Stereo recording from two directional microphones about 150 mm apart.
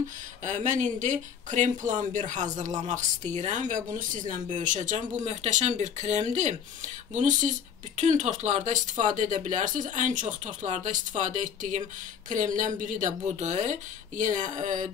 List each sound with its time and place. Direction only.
0.5 s speech: 55° right (ahead or behind)